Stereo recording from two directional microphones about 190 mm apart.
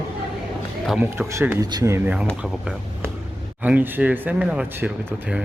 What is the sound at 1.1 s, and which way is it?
Speech, 15° right (ahead or behind).